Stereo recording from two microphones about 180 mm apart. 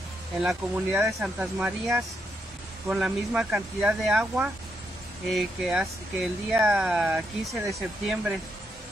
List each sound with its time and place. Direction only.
0.4 s speech: 5° right (ahead or behind)